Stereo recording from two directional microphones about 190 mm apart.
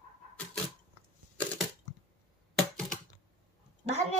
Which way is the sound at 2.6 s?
Centre (ahead or behind).